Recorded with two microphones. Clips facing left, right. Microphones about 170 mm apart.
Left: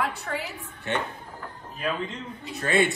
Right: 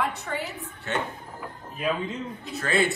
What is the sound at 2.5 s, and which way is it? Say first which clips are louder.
Speech: left 1 dB; 20° left (ahead or behind).